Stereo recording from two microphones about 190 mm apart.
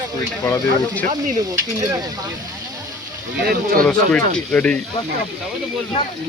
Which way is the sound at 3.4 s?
50° right (ahead or behind).